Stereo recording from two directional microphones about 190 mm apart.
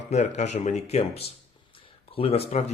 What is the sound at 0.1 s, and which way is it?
Speech, 35° left (ahead or behind).